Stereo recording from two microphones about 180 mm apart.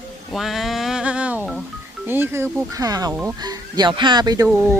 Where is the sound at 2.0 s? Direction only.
10° right (ahead or behind).